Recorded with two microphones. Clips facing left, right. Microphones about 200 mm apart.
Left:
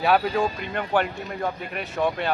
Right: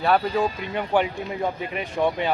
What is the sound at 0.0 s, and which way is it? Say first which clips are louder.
Speech: even; 5° left (ahead or behind).